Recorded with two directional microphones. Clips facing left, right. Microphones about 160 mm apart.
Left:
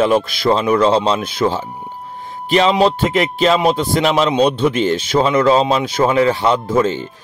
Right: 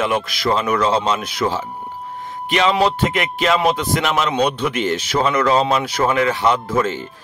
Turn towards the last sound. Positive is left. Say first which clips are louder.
# left 4 dB
turn(degrees=30)  # may be behind; listen again after turning